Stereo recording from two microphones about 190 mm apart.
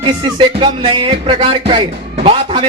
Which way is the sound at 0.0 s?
25° right (ahead or behind).